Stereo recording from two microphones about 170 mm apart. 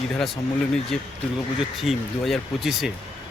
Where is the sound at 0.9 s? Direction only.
5° left (ahead or behind).